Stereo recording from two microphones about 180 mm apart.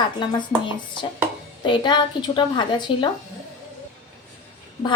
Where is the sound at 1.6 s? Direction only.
25° left (ahead or behind).